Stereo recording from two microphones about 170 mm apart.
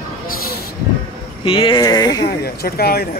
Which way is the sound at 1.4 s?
30° left (ahead or behind).